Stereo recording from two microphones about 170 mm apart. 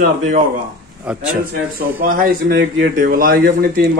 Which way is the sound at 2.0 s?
55° right (ahead or behind).